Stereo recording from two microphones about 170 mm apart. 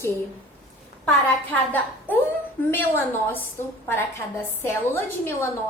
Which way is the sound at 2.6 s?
10° left (ahead or behind).